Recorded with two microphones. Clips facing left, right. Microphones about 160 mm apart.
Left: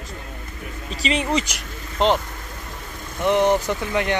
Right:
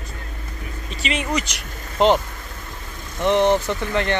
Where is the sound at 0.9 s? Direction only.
35° left (ahead or behind).